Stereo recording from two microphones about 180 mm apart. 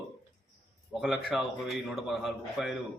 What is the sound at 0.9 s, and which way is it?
A man's voice, centre (ahead or behind).